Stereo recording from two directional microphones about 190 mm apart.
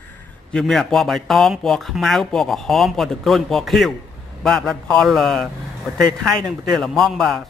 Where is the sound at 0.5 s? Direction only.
Centre (ahead or behind).